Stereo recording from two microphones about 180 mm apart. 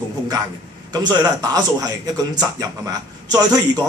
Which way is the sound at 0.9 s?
20° right (ahead or behind).